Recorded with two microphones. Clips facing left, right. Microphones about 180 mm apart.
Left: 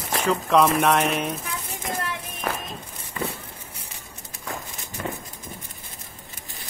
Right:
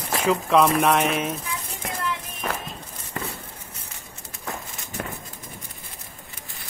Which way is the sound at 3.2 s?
60° right (ahead or behind).